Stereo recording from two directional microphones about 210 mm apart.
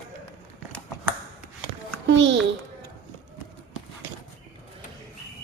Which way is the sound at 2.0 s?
60° right (ahead or behind).